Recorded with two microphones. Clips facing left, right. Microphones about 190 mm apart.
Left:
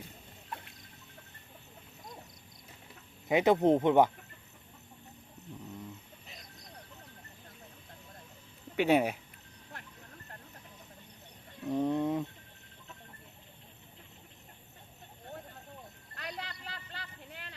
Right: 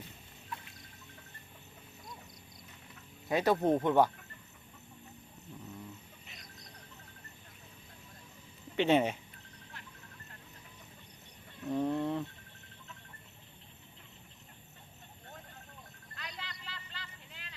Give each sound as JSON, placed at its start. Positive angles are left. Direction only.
{"t": 3.2, "sound": "speech", "side_deg": 20}
{"t": 8.7, "sound": "speech", "side_deg": 10}
{"t": 11.6, "sound": "a sound", "side_deg": 15}
{"t": 16.1, "sound": "clip-clop", "side_deg": 60}